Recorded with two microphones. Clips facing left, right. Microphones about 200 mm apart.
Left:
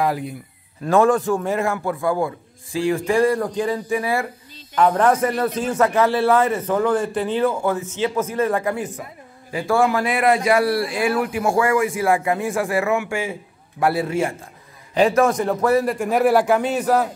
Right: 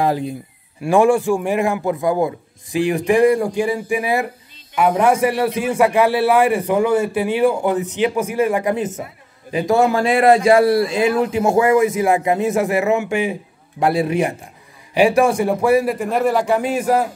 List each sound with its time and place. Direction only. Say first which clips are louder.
0.0 s a man's voice: right 3 dB; 25° right (ahead or behind)
0.8 s a man's voice: right 2 dB; 10° right (ahead or behind)
16.1 s a man's voice: left 3 dB; 5° left (ahead or behind); by 17.0 s 10° right (ahead or behind)